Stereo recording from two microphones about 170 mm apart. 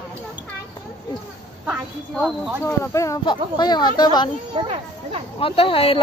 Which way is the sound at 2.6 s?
15° left (ahead or behind).